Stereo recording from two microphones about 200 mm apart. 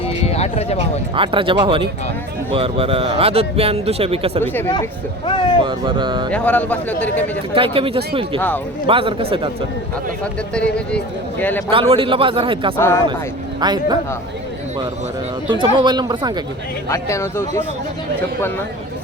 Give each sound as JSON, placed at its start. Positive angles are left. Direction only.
{"t": 0.0, "sound": "a sound", "side_deg": 30}
{"t": 1.1, "sound": "speech", "side_deg": -25}
{"t": 4.7, "sound": "speech", "side_deg": 25}
{"t": 5.6, "sound": "speech", "side_deg": -25}
{"t": 6.3, "sound": "speech", "side_deg": 5}
{"t": 7.5, "sound": "speech", "side_deg": -25}
{"t": 8.4, "sound": "speech", "side_deg": 10}
{"t": 8.9, "sound": "speech", "side_deg": -25}
{"t": 10.5, "sound": "a man's voice", "side_deg": 5}
{"t": 11.7, "sound": "speech", "side_deg": -25}
{"t": 15.4, "sound": "speech", "side_deg": -25}
{"t": 16.9, "sound": "speech", "side_deg": 15}